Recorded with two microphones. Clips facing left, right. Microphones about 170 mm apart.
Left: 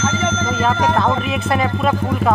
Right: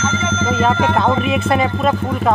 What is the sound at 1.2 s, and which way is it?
Speech, centre (ahead or behind).